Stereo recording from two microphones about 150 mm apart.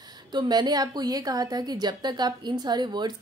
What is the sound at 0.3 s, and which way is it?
A woman's voice, 30° right (ahead or behind).